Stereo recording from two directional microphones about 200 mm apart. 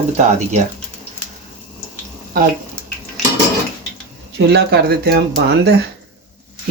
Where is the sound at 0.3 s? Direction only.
35° right (ahead or behind).